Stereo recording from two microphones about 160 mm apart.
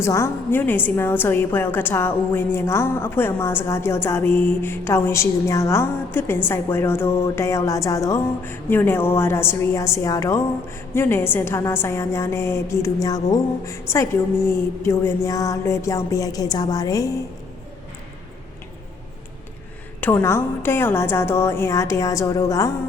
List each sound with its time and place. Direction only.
0.0 s a woman's voice: 15° left (ahead or behind)
20.0 s a woman's voice: 10° left (ahead or behind)